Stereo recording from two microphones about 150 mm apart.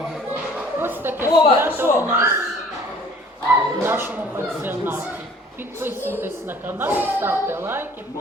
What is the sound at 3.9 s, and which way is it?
A man's voice, 15° right (ahead or behind).